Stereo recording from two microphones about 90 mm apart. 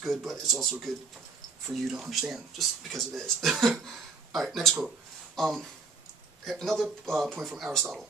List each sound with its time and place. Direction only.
0.0 s speech: centre (ahead or behind)